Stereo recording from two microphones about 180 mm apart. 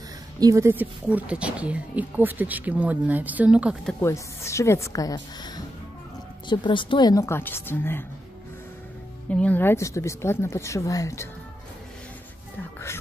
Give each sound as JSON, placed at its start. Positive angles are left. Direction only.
{"t": 0.4, "sound": "speech", "side_deg": -20}
{"t": 4.0, "sound": "a woman's voice", "side_deg": 15}
{"t": 9.3, "sound": "speech", "side_deg": 10}